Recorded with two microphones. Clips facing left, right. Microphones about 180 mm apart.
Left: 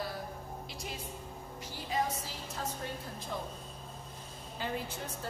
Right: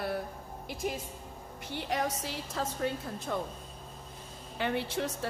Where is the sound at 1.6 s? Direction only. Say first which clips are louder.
Right 2 dB; 65° right (ahead or behind).